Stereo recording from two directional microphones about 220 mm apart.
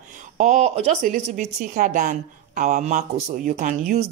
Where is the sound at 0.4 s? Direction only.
35° right (ahead or behind).